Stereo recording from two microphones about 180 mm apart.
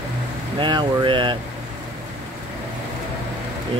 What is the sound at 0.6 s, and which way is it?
Speech, 25° right (ahead or behind).